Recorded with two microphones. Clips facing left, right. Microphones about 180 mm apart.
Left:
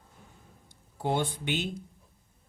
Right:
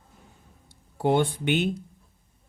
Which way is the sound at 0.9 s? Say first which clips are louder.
Right 7 dB; 65° right (ahead or behind).